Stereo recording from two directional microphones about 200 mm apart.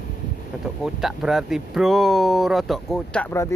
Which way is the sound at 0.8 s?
Centre (ahead or behind).